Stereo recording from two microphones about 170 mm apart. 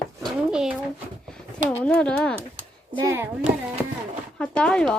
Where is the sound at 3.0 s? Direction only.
15° right (ahead or behind).